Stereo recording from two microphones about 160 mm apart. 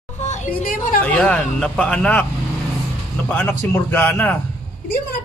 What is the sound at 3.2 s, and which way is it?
Speech, 5° left (ahead or behind).